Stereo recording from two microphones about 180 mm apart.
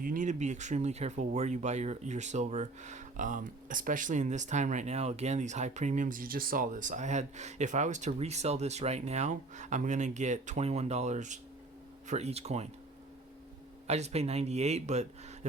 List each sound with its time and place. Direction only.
0.0 s speech: 50° right (ahead or behind)
13.8 s speech: 35° right (ahead or behind)